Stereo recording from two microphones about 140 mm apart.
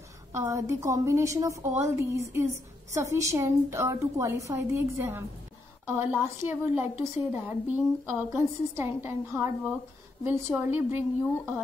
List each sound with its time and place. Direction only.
0.3 s a woman's voice: 20° right (ahead or behind)